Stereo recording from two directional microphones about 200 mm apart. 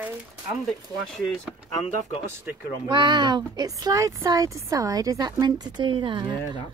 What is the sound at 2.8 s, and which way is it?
Speech, 25° right (ahead or behind).